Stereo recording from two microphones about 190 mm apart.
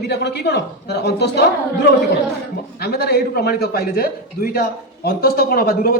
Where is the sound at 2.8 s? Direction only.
55° left (ahead or behind).